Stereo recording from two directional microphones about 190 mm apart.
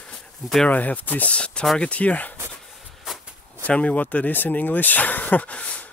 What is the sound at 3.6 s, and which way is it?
Speech, 5° left (ahead or behind).